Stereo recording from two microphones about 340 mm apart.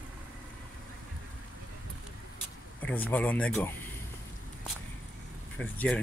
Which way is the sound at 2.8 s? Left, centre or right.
Centre.